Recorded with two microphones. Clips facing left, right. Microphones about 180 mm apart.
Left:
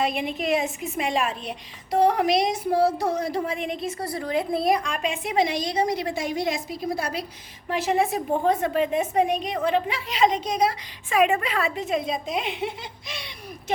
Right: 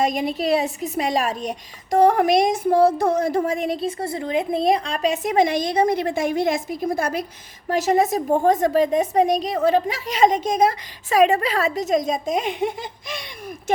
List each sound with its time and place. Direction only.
0.0 s a woman's voice: 40° right (ahead or behind)